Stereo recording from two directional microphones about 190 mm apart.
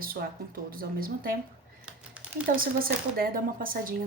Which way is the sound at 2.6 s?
50° right (ahead or behind).